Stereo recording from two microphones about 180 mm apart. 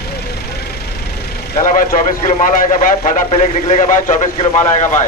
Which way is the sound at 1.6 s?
50° left (ahead or behind).